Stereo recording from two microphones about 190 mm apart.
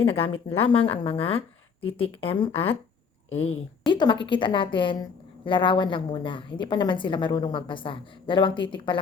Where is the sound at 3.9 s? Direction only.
25° left (ahead or behind).